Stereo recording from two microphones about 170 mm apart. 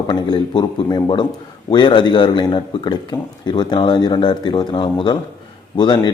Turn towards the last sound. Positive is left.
turn(degrees=25)  # may be behind; listen again after turning